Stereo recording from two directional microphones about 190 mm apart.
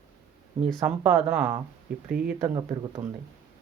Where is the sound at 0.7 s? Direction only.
5° right (ahead or behind).